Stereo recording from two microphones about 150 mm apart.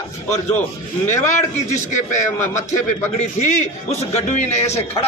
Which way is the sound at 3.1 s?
50° left (ahead or behind).